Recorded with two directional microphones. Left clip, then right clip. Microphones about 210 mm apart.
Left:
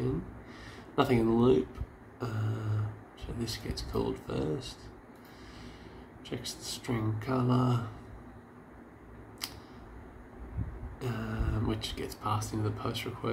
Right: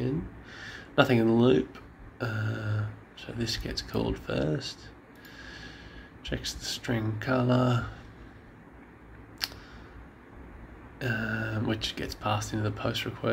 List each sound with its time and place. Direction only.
0.7 s speech: 15° right (ahead or behind)
6.2 s speech: 15° right (ahead or behind)
11.0 s speech: 15° right (ahead or behind)